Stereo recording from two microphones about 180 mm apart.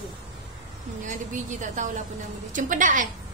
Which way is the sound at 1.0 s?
45° right (ahead or behind).